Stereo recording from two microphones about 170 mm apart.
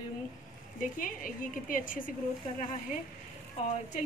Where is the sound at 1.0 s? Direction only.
55° left (ahead or behind).